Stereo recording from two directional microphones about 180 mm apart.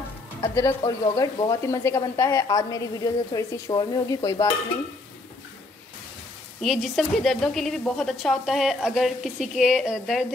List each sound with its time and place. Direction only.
0.4 s speech: 15° left (ahead or behind)
6.6 s a woman's voice: centre (ahead or behind)